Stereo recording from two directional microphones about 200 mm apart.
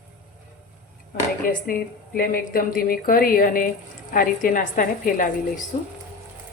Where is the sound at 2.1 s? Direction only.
45° left (ahead or behind).